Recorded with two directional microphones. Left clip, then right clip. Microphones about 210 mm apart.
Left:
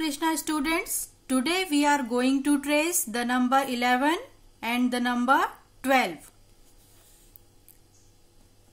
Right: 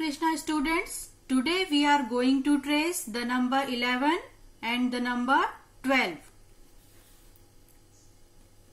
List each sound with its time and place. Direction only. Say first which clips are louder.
0.0 s speech: left 1 dB; 55° left (ahead or behind)